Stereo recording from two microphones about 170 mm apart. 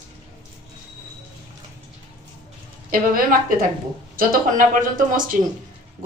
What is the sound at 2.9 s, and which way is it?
A woman's voice, 55° right (ahead or behind).